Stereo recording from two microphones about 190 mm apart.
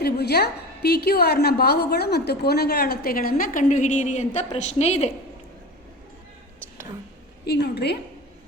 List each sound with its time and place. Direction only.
0.0 s a woman's voice: 55° left (ahead or behind); by 5.1 s 35° left (ahead or behind)
7.4 s a woman's voice: 60° left (ahead or behind)